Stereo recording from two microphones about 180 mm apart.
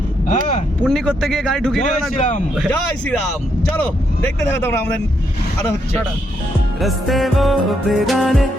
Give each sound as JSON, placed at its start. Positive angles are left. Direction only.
{"t": 0.9, "sound": "music", "side_deg": 5}
{"t": 2.1, "sound": "a man's voice", "side_deg": 40}
{"t": 3.7, "sound": "speech", "side_deg": 10}
{"t": 6.8, "sound": "music", "side_deg": 0}